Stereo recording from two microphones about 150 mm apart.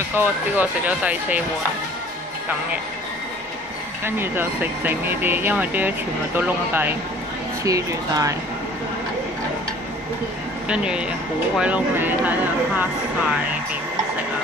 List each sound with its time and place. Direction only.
0.1 s speech: 10° right (ahead or behind)
4.0 s speech: 15° right (ahead or behind)
10.7 s speech: 5° right (ahead or behind)